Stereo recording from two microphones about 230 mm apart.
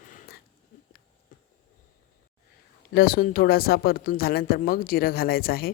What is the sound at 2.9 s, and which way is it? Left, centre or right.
Speech, left.